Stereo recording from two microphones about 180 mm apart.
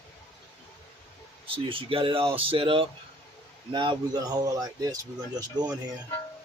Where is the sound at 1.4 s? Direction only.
30° right (ahead or behind).